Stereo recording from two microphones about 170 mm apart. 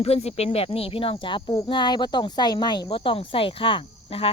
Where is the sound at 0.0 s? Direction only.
35° left (ahead or behind).